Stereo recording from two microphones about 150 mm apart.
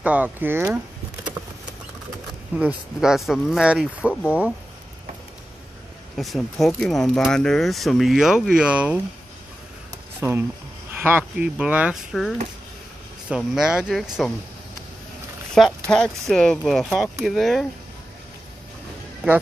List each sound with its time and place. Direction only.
0.0 s speech: 10° right (ahead or behind)
2.5 s speech: 5° right (ahead or behind)
6.1 s speech: centre (ahead or behind)
10.2 s speech: 20° right (ahead or behind); by 12.4 s centre (ahead or behind)
13.4 s speech: 5° right (ahead or behind)
15.5 s speech: 5° left (ahead or behind)